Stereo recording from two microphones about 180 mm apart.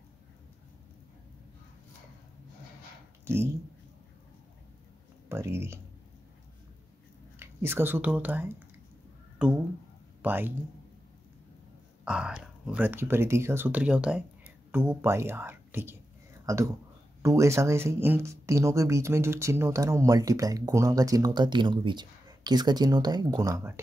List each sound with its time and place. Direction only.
5.3 s speech: 15° right (ahead or behind)
7.3 s speech: 15° right (ahead or behind)
12.0 s speech: 5° right (ahead or behind)